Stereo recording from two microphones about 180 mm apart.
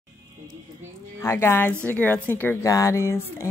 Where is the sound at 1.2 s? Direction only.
15° left (ahead or behind).